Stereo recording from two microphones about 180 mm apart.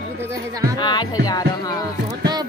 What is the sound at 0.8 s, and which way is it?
Music, 25° left (ahead or behind).